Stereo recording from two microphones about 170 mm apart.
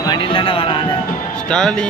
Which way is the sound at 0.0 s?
30° left (ahead or behind).